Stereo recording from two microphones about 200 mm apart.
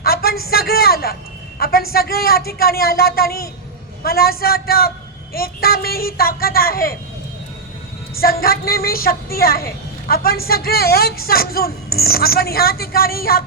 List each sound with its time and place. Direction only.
0.0 s a sound: 50° left (ahead or behind)
1.5 s a woman's voice: 50° left (ahead or behind)
8.2 s a woman's voice: 50° left (ahead or behind)